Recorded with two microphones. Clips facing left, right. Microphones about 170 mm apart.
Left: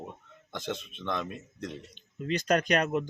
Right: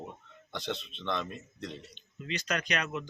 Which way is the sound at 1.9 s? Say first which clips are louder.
Left 7 dB; 45° left (ahead or behind).